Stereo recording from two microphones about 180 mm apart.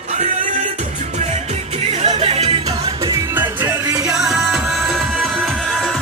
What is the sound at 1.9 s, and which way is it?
Music, 35° right (ahead or behind).